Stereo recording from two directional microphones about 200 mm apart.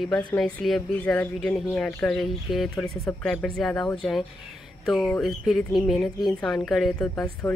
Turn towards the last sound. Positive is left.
turn(degrees=5)  # may be behind; listen again after turning